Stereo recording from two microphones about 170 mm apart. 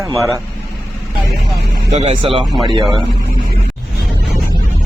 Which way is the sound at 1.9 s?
35° right (ahead or behind).